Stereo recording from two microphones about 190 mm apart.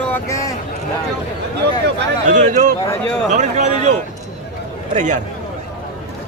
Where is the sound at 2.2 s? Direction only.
40° right (ahead or behind).